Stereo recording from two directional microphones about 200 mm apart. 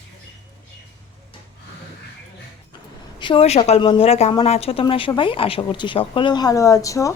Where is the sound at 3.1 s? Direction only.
25° left (ahead or behind).